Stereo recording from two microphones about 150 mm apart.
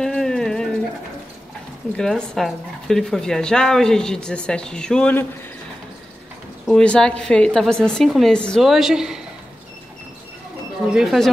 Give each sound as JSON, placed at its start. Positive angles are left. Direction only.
{"t": 0.0, "sound": "a sound", "side_deg": 5}
{"t": 2.0, "sound": "speech", "side_deg": 5}
{"t": 6.7, "sound": "speech", "side_deg": 5}
{"t": 10.9, "sound": "speech", "side_deg": -5}